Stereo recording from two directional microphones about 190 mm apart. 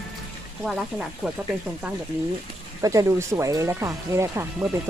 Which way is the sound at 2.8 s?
15° right (ahead or behind).